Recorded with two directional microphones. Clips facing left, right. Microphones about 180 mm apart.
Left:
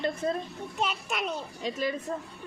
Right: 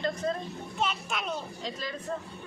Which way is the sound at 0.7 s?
5° left (ahead or behind).